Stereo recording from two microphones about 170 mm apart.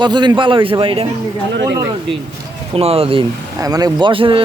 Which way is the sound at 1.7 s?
20° right (ahead or behind).